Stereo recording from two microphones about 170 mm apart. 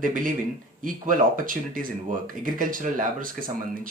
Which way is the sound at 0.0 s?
55° right (ahead or behind).